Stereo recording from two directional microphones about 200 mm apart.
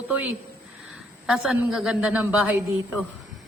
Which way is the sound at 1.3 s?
5° right (ahead or behind).